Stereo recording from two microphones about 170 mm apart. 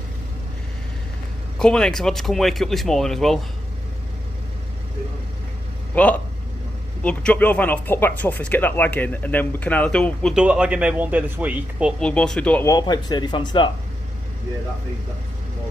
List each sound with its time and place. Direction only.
1.6 s speech: 5° left (ahead or behind)
5.9 s speech: 10° left (ahead or behind)
10.3 s speech: 5° right (ahead or behind)
12.0 s speech: 5° left (ahead or behind)
12.6 s speech: 25° left (ahead or behind)